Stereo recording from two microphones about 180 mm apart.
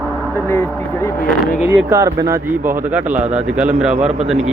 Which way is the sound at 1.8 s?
20° right (ahead or behind).